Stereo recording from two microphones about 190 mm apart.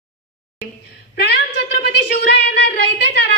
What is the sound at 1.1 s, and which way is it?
A woman's voice, 60° left (ahead or behind).